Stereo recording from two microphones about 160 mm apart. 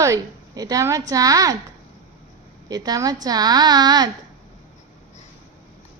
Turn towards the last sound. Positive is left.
turn(degrees=-25)  # may be behind; listen again after turning